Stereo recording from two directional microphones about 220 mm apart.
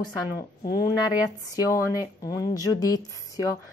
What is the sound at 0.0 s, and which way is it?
A woman's voice, 20° left (ahead or behind).